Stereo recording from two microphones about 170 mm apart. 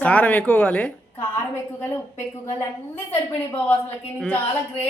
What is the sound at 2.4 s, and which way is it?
Speech, 15° left (ahead or behind).